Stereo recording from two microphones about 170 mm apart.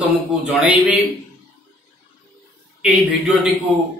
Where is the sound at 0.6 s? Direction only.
10° right (ahead or behind).